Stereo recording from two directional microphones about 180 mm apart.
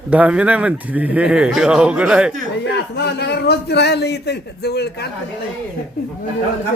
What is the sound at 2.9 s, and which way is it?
A man's voice, 65° left (ahead or behind).